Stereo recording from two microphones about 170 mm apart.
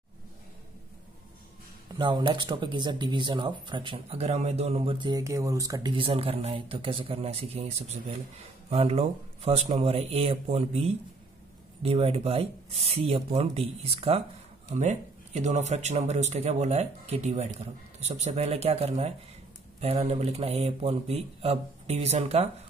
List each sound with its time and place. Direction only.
2.0 s speech: 25° right (ahead or behind)
5.1 s speech: 20° right (ahead or behind); by 22.5 s 40° right (ahead or behind)